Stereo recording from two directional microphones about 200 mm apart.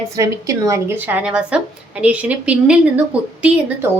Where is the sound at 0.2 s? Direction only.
15° right (ahead or behind).